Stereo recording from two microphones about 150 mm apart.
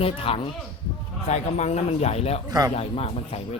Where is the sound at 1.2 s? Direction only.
50° left (ahead or behind).